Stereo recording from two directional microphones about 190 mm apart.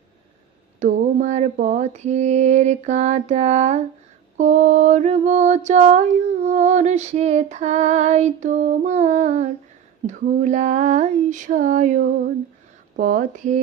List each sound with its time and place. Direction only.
0.7 s mantra: 40° right (ahead or behind)
12.9 s speech: 45° right (ahead or behind)